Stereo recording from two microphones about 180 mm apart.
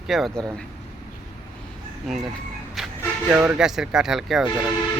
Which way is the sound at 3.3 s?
10° right (ahead or behind).